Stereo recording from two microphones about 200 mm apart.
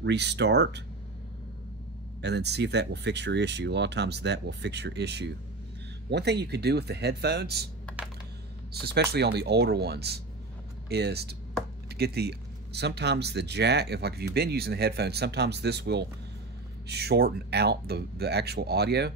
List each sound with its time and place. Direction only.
0.0 s speech: 60° right (ahead or behind)
2.2 s speech: 55° right (ahead or behind)
8.8 s speech: 55° right (ahead or behind)